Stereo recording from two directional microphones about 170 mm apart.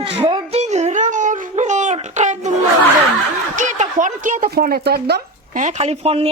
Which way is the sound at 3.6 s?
45° right (ahead or behind).